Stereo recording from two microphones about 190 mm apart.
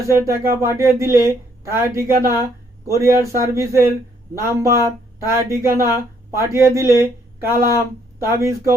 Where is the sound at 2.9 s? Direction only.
15° right (ahead or behind).